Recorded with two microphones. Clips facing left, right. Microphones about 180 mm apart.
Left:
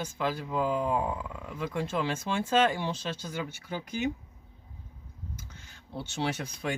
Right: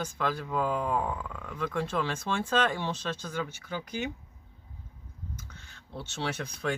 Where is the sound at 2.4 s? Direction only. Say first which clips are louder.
Left 3 dB; 10° left (ahead or behind).